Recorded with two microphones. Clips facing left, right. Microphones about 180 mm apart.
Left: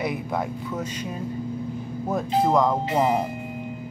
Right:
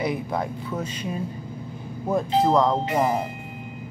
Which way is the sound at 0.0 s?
Centre (ahead or behind).